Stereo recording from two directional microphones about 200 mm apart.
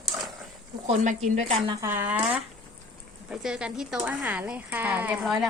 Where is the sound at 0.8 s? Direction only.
40° right (ahead or behind).